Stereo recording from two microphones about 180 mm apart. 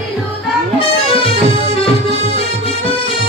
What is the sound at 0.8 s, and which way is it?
Music, 30° left (ahead or behind).